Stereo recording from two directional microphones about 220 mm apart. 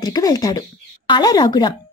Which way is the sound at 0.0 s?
15° left (ahead or behind).